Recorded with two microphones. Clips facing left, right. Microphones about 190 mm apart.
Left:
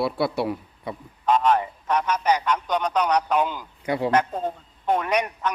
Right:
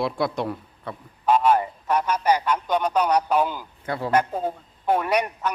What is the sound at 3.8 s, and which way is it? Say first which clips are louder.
Speech: left 4 dB; 15° left (ahead or behind).